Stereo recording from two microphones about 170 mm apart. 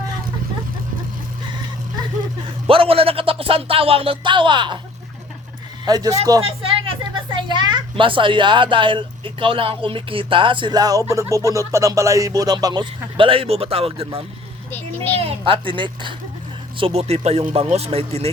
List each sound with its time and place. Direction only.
2.6 s speech: 35° right (ahead or behind)
5.8 s a woman's voice: 20° right (ahead or behind)
14.7 s a child's voice: 10° left (ahead or behind)
15.2 s speech: 30° right (ahead or behind)